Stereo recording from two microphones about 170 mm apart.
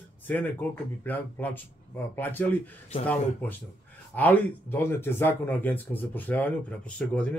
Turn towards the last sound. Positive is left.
turn(degrees=5)  # may be behind; listen again after turning